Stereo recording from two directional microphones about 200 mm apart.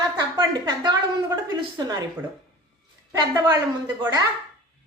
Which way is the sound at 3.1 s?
20° right (ahead or behind).